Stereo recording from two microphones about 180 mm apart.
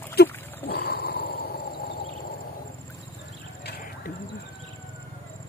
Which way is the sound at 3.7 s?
55° left (ahead or behind).